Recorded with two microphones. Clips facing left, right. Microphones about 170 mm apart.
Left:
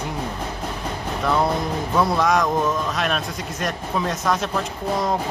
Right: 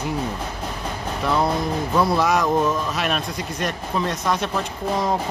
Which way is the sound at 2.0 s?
5° right (ahead or behind).